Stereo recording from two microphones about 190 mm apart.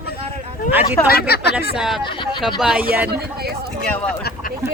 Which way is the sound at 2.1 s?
25° left (ahead or behind).